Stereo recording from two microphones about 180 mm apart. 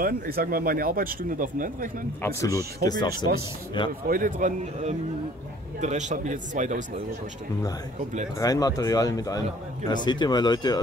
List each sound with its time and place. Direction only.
0.0 s speech: 55° right (ahead or behind)
2.2 s speech: 20° left (ahead or behind)
4.1 s speech: 45° right (ahead or behind)
8.4 s speech: 20° left (ahead or behind)